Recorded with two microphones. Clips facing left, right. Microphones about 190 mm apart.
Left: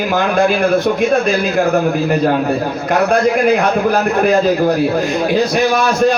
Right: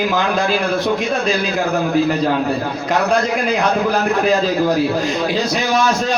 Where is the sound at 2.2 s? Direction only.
55° left (ahead or behind).